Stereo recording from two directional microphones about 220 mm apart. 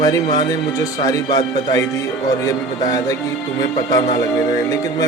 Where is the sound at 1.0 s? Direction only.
15° left (ahead or behind).